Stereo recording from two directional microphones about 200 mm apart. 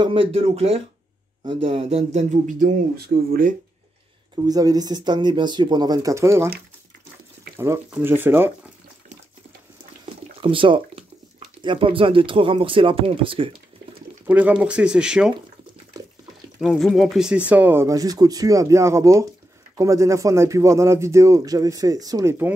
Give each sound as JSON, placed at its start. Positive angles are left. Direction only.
{"t": 0.0, "sound": "speech", "side_deg": -25}
{"t": 4.4, "sound": "speech", "side_deg": -20}
{"t": 7.5, "sound": "speech", "side_deg": -15}
{"t": 10.4, "sound": "a sound", "side_deg": -25}
{"t": 11.6, "sound": "speech", "side_deg": -25}
{"t": 14.2, "sound": "speech", "side_deg": -5}
{"t": 16.0, "sound": "a sound", "side_deg": -20}
{"t": 16.6, "sound": "speech", "side_deg": 0}